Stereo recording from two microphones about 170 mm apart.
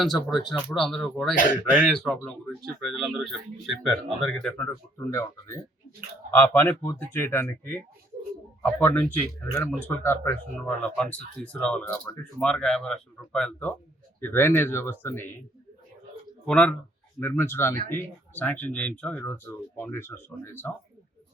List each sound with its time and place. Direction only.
0.0 s speech: centre (ahead or behind)
4.7 s speech: 15° left (ahead or behind)
16.5 s speech: 5° left (ahead or behind)